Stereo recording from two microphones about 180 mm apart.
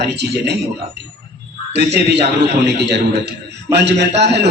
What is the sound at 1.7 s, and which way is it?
A man's voice, 65° right (ahead or behind).